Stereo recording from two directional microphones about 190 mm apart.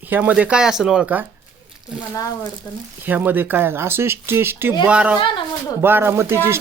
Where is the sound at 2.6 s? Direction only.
15° left (ahead or behind).